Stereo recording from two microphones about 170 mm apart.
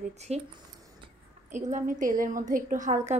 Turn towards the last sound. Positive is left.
turn(degrees=-45)  # may be behind; listen again after turning